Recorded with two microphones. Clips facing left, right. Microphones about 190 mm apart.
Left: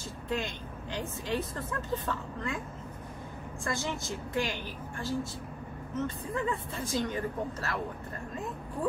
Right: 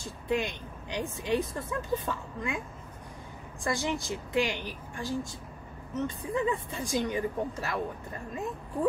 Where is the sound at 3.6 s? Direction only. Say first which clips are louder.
Right 4 dB; 15° right (ahead or behind).